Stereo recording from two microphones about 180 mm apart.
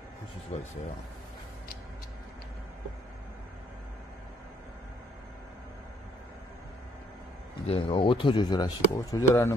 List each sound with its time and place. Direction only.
0.5 s speech: 35° left (ahead or behind)
7.6 s speech: 30° left (ahead or behind)